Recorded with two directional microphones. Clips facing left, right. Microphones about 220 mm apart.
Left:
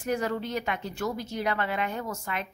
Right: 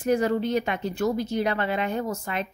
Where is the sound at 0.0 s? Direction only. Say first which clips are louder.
Right 6 dB; 20° right (ahead or behind).